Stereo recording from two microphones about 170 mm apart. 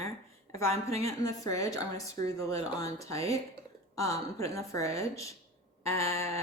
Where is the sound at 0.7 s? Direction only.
35° right (ahead or behind).